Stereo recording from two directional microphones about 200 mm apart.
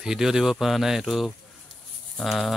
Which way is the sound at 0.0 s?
Centre (ahead or behind).